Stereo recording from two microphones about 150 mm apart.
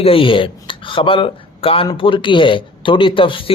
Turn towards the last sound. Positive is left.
turn(degrees=35)  # may be behind; listen again after turning